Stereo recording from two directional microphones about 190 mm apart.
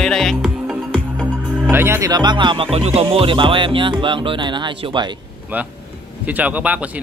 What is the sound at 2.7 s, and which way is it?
Speech, 30° right (ahead or behind).